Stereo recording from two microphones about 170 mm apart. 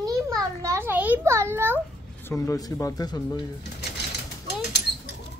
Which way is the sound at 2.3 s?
20° left (ahead or behind).